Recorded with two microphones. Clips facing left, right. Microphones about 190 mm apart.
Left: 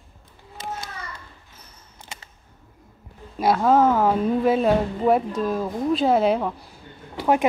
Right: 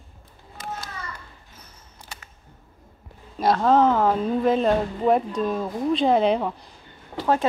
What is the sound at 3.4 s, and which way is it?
Speech, 10° left (ahead or behind).